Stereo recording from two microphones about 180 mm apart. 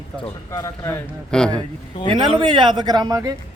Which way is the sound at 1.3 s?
5° left (ahead or behind).